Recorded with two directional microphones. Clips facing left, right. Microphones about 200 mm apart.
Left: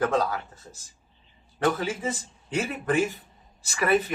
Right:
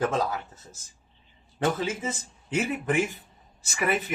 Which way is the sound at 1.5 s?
20° right (ahead or behind).